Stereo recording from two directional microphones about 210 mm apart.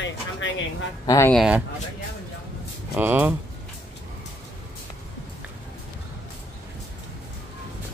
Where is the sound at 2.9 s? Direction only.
10° right (ahead or behind).